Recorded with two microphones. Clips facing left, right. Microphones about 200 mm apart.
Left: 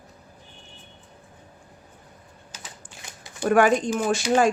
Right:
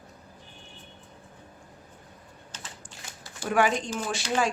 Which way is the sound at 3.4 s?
50° left (ahead or behind).